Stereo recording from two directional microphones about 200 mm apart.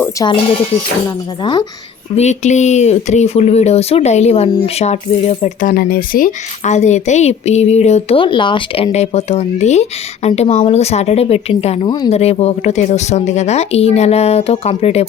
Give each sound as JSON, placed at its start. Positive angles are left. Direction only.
{"t": 0.0, "sound": "speech", "side_deg": 15}
{"t": 2.1, "sound": "speech", "side_deg": 35}